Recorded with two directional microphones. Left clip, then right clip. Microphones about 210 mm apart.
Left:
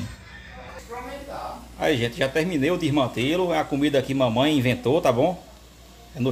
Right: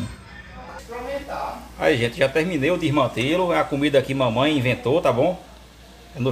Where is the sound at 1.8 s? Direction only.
5° left (ahead or behind).